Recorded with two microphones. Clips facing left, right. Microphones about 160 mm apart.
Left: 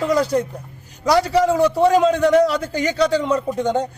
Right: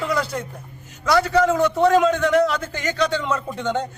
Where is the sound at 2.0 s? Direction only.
35° left (ahead or behind).